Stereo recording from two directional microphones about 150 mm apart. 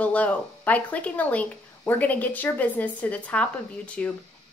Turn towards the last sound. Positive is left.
turn(degrees=10)  # may be behind; listen again after turning